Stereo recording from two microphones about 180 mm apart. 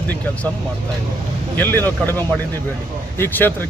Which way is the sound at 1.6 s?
10° left (ahead or behind).